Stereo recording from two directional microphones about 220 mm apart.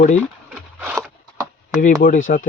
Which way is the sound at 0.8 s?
5° right (ahead or behind).